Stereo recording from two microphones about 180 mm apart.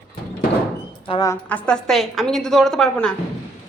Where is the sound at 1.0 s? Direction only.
30° left (ahead or behind).